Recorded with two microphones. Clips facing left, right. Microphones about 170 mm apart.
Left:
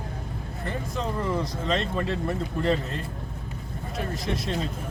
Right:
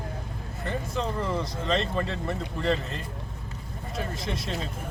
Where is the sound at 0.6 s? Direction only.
Centre (ahead or behind).